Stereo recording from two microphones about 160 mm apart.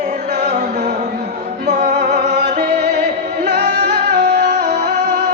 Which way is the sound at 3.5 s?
90° right.